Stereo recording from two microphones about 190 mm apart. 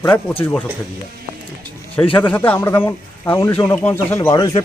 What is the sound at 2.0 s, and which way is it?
Speech, 10° left (ahead or behind).